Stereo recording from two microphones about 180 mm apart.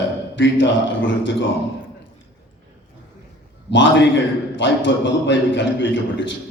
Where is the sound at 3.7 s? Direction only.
90° left.